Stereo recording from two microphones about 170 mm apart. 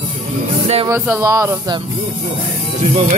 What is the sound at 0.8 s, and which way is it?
Speech, 15° right (ahead or behind).